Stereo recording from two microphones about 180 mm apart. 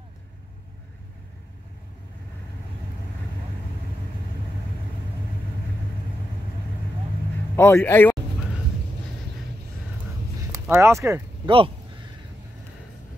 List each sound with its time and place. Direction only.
7.5 s speech: 15° left (ahead or behind)
10.5 s speech: 15° right (ahead or behind)
11.4 s speech: 30° right (ahead or behind)